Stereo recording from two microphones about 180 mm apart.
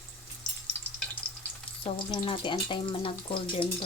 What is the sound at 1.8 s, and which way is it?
Speech, 25° left (ahead or behind).